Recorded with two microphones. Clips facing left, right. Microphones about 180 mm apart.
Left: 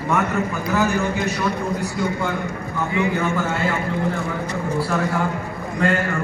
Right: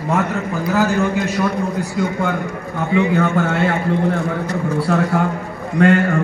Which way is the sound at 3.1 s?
65° right (ahead or behind).